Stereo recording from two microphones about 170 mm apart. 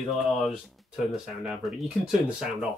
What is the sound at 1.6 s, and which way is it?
Speech, centre (ahead or behind).